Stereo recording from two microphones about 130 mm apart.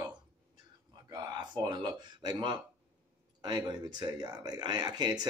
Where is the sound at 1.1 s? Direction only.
35° right (ahead or behind).